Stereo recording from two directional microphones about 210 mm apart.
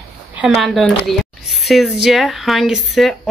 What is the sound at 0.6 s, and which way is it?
Speech, centre (ahead or behind).